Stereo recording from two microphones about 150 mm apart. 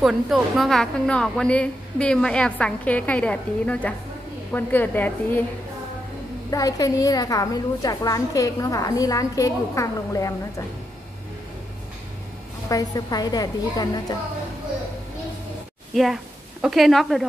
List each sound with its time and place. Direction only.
0.0 s a woman's voice: centre (ahead or behind)
6.5 s a woman's voice: 25° left (ahead or behind)
12.6 s a woman's voice: 25° left (ahead or behind)
15.9 s a woman's voice: centre (ahead or behind)